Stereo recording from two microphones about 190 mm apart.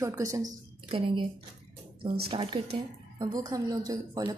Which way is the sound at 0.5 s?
30° right (ahead or behind).